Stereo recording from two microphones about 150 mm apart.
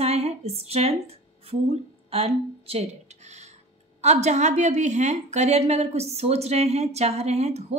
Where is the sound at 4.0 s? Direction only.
50° right (ahead or behind).